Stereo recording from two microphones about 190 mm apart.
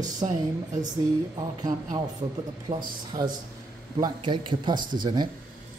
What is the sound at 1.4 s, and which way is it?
A man's voice, 20° right (ahead or behind).